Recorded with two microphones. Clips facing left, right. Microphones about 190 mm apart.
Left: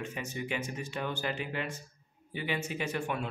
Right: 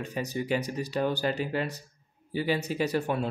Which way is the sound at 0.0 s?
35° right (ahead or behind).